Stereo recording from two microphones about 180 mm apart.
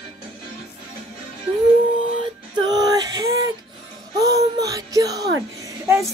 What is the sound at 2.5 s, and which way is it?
Music, 20° right (ahead or behind).